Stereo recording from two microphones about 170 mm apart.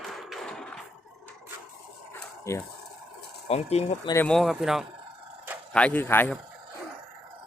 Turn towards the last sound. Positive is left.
turn(degrees=10)  # may be behind; listen again after turning